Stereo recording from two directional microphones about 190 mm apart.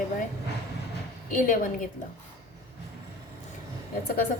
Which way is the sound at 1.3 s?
45° left (ahead or behind).